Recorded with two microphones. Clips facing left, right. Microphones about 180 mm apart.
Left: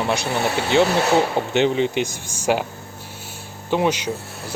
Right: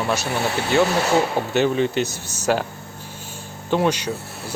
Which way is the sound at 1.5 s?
15° left (ahead or behind).